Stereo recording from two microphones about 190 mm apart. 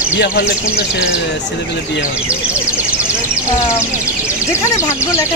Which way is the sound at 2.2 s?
5° right (ahead or behind).